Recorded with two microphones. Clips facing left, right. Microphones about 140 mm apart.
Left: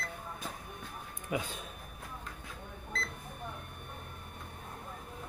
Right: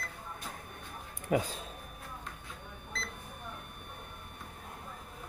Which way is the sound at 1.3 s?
35° right (ahead or behind).